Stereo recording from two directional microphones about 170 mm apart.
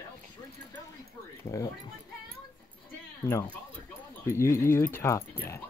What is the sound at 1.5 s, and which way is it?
Speech, 20° left (ahead or behind).